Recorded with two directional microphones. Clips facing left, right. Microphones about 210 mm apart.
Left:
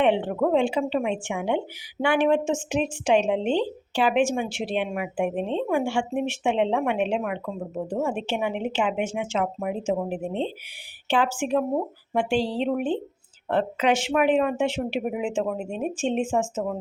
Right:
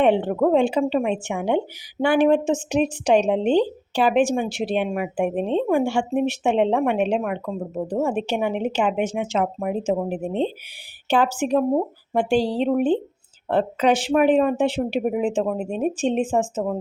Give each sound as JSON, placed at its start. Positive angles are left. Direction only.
{"t": 0.0, "sound": "speech", "side_deg": -40}